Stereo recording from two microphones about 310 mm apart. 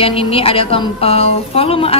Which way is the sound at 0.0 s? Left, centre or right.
Centre.